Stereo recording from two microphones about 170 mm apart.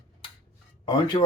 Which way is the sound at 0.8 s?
30° left (ahead or behind).